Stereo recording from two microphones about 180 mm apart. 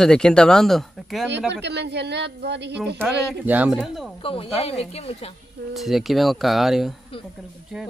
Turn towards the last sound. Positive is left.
turn(degrees=0)  # may be behind; listen again after turning